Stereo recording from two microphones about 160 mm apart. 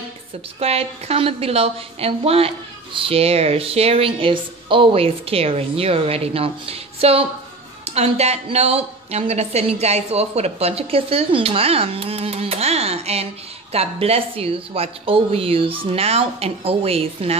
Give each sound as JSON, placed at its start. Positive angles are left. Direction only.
{"t": 0.6, "sound": "a woman's voice", "side_deg": -40}